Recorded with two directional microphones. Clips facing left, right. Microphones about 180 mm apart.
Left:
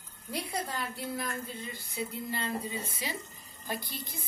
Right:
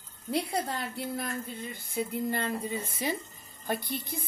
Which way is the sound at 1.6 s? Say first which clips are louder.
Right 4 dB; 50° right (ahead or behind).